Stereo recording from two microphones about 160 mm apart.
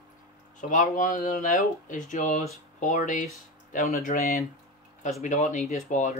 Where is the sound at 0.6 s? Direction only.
50° left (ahead or behind).